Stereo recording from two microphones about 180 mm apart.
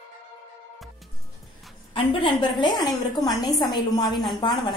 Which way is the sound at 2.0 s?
25° left (ahead or behind).